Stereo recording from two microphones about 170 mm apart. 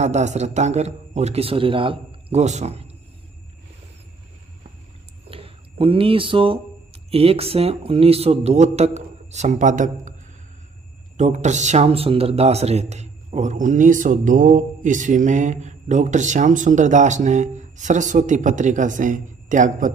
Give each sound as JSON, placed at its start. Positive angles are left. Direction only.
{"t": 0.0, "sound": "a man's voice", "side_deg": -40}
{"t": 5.3, "sound": "speech", "side_deg": -35}
{"t": 11.1, "sound": "speech", "side_deg": -45}